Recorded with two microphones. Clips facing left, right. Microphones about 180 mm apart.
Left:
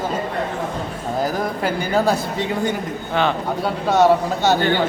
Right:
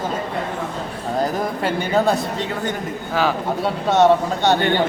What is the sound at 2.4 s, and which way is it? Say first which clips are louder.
Speech: left 3 dB; 10° left (ahead or behind).